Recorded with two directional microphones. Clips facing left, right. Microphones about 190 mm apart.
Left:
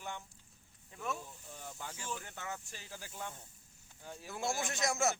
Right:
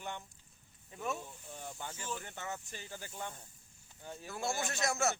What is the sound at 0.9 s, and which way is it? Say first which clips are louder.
Speech: right 2 dB; 5° right (ahead or behind).